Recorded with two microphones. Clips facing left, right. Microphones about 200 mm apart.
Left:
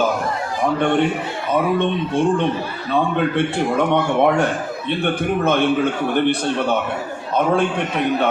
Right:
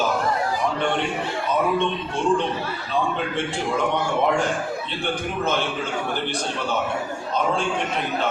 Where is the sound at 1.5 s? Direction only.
60° left (ahead or behind).